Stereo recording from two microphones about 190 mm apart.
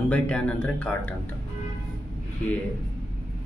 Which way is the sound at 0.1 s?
5° left (ahead or behind).